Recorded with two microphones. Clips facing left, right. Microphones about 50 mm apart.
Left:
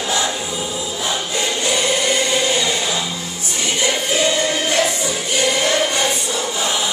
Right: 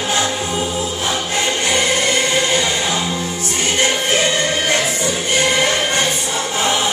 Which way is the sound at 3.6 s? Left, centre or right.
Right.